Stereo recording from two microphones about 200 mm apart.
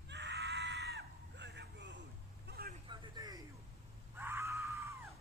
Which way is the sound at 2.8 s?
25° right (ahead or behind).